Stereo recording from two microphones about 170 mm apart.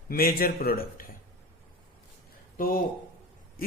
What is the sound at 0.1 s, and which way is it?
Speech, 60° left (ahead or behind).